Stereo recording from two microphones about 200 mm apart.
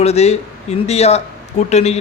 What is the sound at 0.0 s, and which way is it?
A man's voice, 30° left (ahead or behind).